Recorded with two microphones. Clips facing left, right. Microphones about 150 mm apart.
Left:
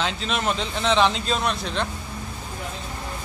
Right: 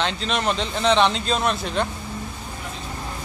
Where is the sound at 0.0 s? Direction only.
5° left (ahead or behind).